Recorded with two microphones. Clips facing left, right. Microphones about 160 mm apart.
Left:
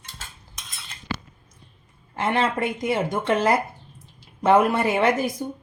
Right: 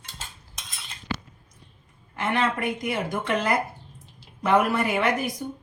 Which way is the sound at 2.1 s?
30° left (ahead or behind).